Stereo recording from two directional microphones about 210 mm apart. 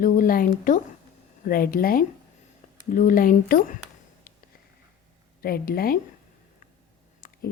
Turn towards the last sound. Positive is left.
turn(degrees=40)  # may be behind; listen again after turning